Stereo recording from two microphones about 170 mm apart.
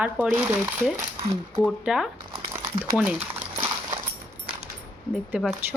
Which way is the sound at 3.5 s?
25° right (ahead or behind).